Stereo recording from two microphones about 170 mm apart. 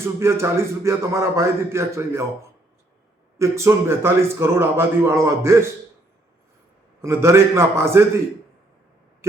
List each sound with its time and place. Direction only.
0.0 s a man's voice: 15° right (ahead or behind)
3.3 s a man's voice: 15° right (ahead or behind)
7.0 s a man's voice: 15° right (ahead or behind)